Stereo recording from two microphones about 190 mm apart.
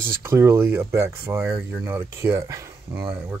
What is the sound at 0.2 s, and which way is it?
Speech, 15° right (ahead or behind).